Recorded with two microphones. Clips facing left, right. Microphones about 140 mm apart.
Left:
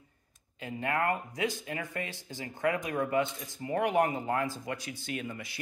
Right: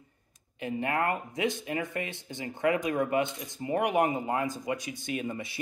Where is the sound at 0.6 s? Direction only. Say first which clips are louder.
Right 2 dB; 20° right (ahead or behind).